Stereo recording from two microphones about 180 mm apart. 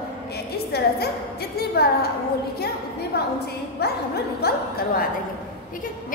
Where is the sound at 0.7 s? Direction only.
60° left (ahead or behind).